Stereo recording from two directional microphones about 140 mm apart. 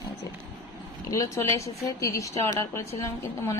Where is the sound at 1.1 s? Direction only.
20° left (ahead or behind).